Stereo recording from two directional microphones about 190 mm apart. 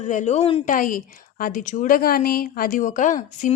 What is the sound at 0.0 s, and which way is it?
Speech, 40° left (ahead or behind).